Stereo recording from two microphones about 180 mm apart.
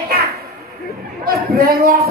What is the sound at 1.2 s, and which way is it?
Speech, 55° right (ahead or behind).